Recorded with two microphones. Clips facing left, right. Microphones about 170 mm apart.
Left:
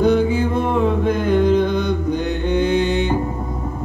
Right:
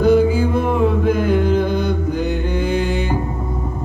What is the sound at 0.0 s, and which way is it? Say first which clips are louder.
Music: right 2 dB; 5° right (ahead or behind).